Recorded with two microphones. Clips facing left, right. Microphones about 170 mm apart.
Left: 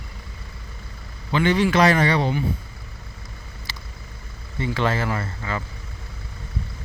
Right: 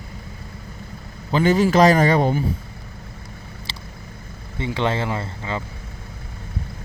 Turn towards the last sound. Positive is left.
turn(degrees=-20)  # may be behind; listen again after turning